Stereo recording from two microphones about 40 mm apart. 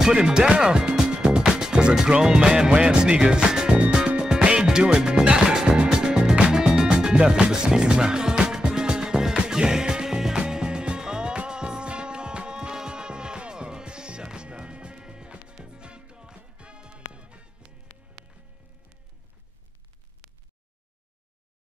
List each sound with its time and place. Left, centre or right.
0.0 s speech: centre
3.8 s music: right